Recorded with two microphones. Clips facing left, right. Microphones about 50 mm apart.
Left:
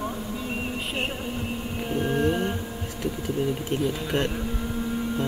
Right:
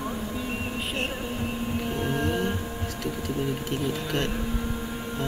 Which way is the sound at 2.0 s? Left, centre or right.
Centre.